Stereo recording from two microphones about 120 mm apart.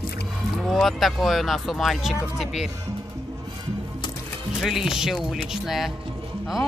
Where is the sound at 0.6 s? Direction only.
Centre (ahead or behind).